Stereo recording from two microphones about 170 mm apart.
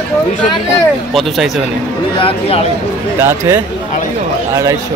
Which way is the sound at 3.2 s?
15° right (ahead or behind).